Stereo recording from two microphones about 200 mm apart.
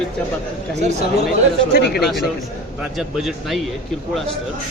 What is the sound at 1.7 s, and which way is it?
Speech, 55° left (ahead or behind).